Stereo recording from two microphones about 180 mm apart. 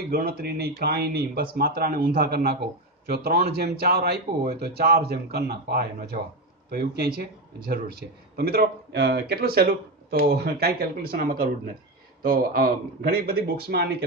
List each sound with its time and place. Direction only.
0.1 s speech: 60° right (ahead or behind)
8.4 s speech: 60° right (ahead or behind)